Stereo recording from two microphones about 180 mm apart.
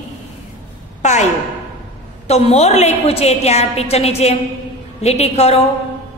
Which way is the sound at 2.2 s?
35° left (ahead or behind).